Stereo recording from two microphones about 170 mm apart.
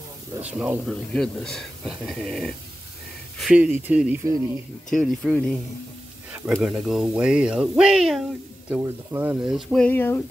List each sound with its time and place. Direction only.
0.5 s speech: 10° right (ahead or behind)
0.8 s speech: 5° left (ahead or behind)
4.9 s speech: centre (ahead or behind)
6.3 s speech: 10° right (ahead or behind)
9.7 s speech: 5° left (ahead or behind)